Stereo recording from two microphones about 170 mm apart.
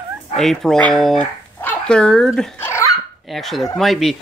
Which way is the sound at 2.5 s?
15° left (ahead or behind).